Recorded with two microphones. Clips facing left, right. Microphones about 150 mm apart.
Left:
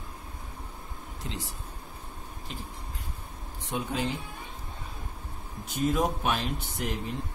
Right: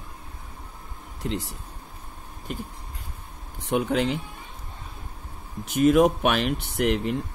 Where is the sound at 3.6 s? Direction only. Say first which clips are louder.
Right 8 dB; 65° right (ahead or behind).